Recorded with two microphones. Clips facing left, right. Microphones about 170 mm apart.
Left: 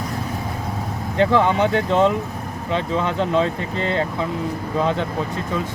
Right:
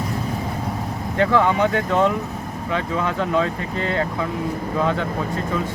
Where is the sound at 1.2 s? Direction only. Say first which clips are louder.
Left 1 dB; 20° left (ahead or behind).